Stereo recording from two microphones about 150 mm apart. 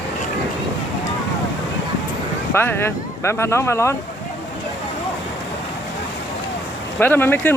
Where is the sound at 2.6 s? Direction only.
15° left (ahead or behind).